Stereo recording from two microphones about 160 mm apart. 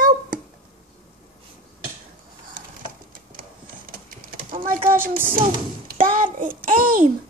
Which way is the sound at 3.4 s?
60° right (ahead or behind).